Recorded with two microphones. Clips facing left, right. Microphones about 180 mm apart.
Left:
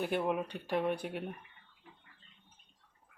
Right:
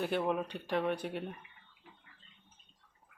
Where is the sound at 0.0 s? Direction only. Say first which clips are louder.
Even; 10° left (ahead or behind).